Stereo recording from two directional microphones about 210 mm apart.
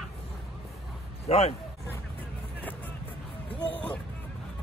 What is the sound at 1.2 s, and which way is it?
Speech, 30° left (ahead or behind).